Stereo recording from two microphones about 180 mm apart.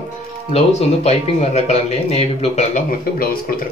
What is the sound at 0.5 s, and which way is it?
Speech, 35° left (ahead or behind).